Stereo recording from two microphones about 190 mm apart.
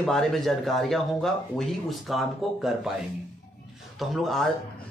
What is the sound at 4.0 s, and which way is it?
Speech, centre (ahead or behind).